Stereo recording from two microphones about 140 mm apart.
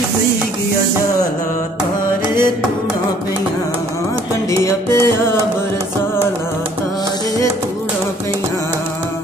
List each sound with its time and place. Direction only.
4.5 s music: 20° left (ahead or behind)